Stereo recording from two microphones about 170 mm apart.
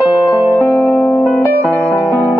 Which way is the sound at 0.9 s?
15° left (ahead or behind).